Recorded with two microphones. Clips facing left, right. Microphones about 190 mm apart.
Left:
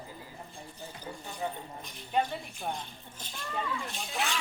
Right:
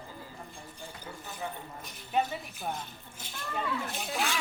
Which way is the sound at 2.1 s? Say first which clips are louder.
Even; 5° right (ahead or behind).